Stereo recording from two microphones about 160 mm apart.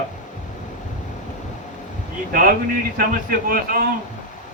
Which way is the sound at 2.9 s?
60° right (ahead or behind).